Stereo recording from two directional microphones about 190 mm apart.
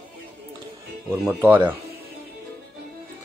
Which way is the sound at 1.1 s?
10° right (ahead or behind).